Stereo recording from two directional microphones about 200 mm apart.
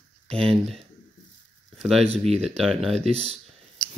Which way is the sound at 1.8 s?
Centre (ahead or behind).